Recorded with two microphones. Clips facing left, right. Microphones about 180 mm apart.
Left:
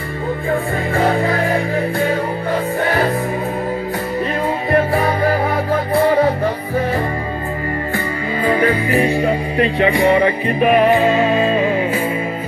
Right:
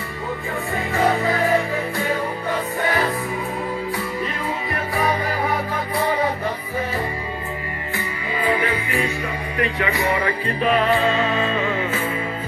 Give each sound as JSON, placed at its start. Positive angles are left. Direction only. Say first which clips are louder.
{"t": 8.5, "sound": "music", "louder": "left 7 dB", "side_deg": 40}